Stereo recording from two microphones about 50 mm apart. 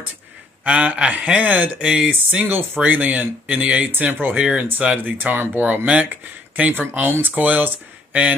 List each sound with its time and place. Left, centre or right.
0.7 s speech: right
2.4 s speech: right
3.8 s speech: right
4.4 s speech: right
5.9 s speech: right
6.9 s speech: right